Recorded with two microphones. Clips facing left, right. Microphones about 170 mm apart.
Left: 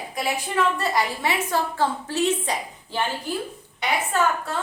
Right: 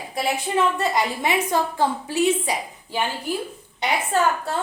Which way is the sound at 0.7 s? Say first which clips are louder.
Right 2 dB; 20° right (ahead or behind).